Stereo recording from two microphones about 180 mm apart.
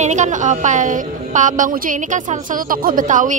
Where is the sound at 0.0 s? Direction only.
40° right (ahead or behind).